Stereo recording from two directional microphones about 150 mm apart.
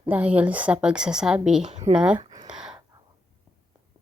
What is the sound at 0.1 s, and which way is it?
A woman's voice, 10° right (ahead or behind).